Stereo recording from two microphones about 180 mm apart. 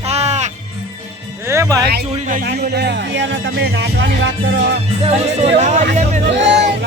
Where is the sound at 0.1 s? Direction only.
35° right (ahead or behind).